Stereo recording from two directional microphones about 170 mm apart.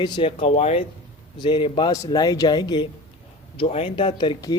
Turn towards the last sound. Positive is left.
turn(degrees=25)  # may be behind; listen again after turning